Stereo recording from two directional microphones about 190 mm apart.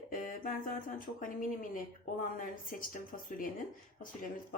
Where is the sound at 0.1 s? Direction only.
45° left (ahead or behind).